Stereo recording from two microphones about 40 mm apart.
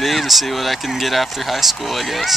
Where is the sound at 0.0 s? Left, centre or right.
Centre.